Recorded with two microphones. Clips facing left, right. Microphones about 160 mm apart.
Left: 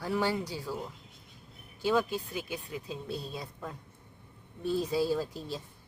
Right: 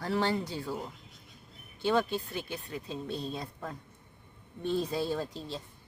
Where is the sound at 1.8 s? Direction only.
5° left (ahead or behind).